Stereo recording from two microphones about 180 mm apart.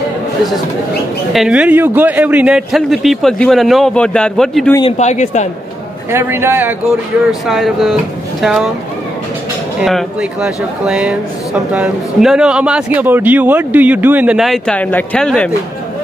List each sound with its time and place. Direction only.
1.3 s a man's voice: 5° right (ahead or behind)
4.9 s a man's voice: 40° left (ahead or behind)
6.1 s a man's voice: 10° right (ahead or behind)
7.2 s a man's voice: centre (ahead or behind)
9.8 s a man's voice: centre (ahead or behind)